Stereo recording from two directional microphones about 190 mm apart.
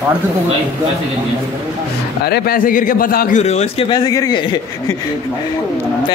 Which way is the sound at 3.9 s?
20° left (ahead or behind).